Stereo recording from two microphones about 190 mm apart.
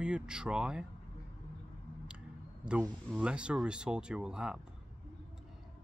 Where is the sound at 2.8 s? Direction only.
Centre (ahead or behind).